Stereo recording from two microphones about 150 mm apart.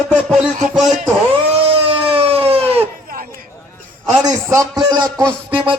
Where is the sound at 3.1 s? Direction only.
75° right (ahead or behind).